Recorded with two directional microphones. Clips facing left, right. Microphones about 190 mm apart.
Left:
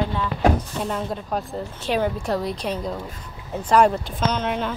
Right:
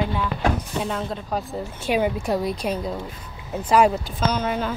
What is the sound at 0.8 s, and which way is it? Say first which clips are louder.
Speech: left 1 dB; 5° left (ahead or behind).